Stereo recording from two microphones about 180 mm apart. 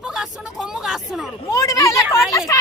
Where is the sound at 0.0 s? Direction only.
Centre (ahead or behind).